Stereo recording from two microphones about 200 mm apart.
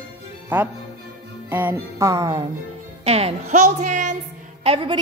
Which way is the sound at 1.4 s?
10° right (ahead or behind).